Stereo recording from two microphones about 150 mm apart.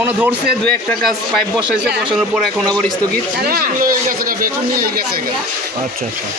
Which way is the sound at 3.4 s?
80° right.